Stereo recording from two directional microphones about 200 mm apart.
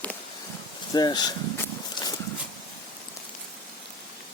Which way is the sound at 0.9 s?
20° left (ahead or behind).